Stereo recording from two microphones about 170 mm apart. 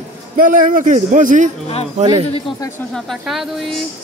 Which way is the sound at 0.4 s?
50° right (ahead or behind).